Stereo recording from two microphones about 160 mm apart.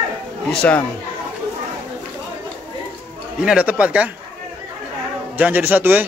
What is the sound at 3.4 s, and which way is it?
Speech, 5° right (ahead or behind).